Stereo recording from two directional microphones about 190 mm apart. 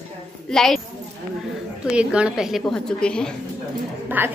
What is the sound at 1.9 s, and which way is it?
A woman's voice, 5° right (ahead or behind).